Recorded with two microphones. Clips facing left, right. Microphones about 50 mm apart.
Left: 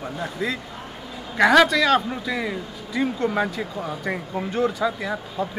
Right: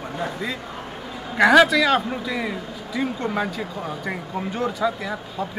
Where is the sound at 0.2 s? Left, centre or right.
Centre.